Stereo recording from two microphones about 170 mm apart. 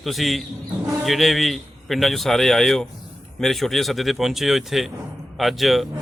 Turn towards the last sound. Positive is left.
turn(degrees=0)  # may be behind; listen again after turning